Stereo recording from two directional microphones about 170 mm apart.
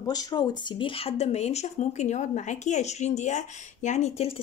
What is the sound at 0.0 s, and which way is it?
A woman's voice, 20° left (ahead or behind).